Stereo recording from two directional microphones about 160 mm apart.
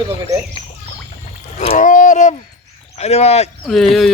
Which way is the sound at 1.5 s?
50° left (ahead or behind).